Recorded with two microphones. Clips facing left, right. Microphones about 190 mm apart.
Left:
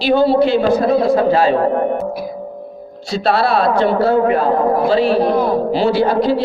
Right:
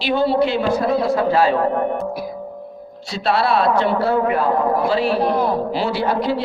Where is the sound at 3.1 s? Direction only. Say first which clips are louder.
Left 3 dB; 40° left (ahead or behind).